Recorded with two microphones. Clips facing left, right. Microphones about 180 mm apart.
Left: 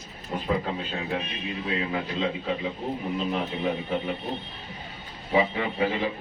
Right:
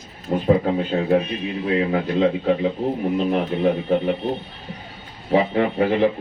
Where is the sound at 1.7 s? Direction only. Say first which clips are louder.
Right 10 dB; 55° right (ahead or behind).